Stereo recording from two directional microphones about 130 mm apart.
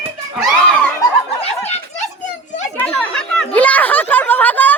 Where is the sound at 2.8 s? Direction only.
5° left (ahead or behind).